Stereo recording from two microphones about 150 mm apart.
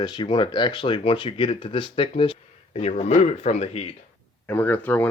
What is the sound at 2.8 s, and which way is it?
Speech, 45° left (ahead or behind).